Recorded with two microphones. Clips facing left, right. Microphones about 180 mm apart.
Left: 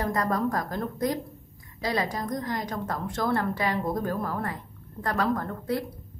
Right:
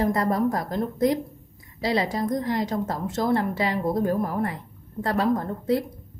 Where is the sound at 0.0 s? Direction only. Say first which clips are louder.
Right 4 dB; 25° right (ahead or behind).